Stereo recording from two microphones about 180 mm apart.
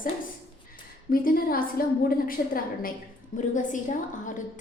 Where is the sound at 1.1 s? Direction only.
55° left (ahead or behind).